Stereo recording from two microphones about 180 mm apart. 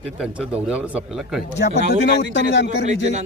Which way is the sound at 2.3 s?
75° left (ahead or behind).